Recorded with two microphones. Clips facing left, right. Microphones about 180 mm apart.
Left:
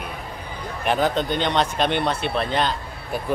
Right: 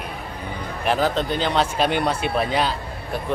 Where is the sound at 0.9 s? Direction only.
Centre (ahead or behind).